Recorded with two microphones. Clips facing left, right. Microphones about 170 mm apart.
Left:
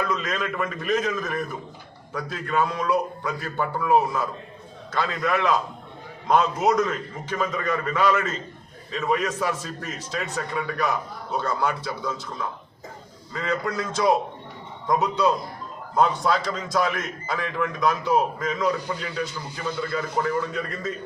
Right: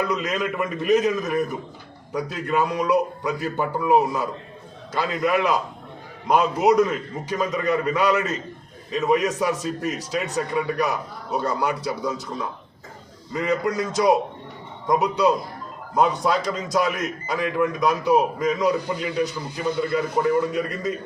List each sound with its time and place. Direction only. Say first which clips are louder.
0.0 s a man's voice: right 3 dB; 15° right (ahead or behind)
13.3 s a man's voice: right 4 dB; 15° right (ahead or behind)